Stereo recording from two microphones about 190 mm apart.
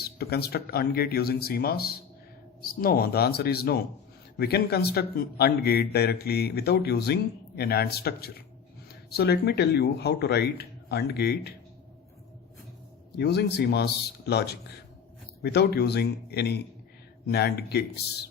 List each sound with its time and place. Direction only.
0.2 s a man's voice: 55° left (ahead or behind)
13.1 s a man's voice: 60° left (ahead or behind)